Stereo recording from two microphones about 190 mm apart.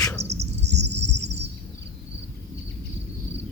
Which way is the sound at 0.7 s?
65° right (ahead or behind).